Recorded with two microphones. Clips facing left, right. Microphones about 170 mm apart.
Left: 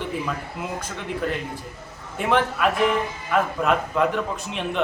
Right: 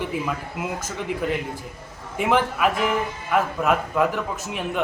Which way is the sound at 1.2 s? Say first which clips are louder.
Right 1 dB; 15° right (ahead or behind).